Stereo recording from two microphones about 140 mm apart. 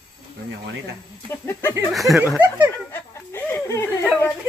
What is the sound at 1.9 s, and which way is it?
Speech, centre (ahead or behind).